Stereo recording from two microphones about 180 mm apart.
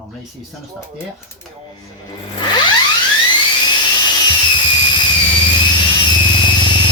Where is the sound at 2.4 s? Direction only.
25° left (ahead or behind).